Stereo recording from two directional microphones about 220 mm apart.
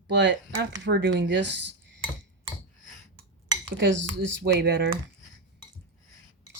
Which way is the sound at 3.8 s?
55° right (ahead or behind).